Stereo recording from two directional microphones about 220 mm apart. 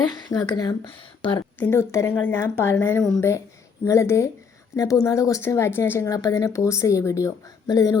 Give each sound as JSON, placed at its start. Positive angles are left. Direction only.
{"t": 0.0, "sound": "a woman's voice", "side_deg": 20}
{"t": 1.5, "sound": "speech", "side_deg": 10}